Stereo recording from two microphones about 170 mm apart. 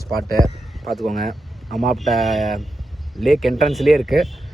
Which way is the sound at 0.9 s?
Centre (ahead or behind).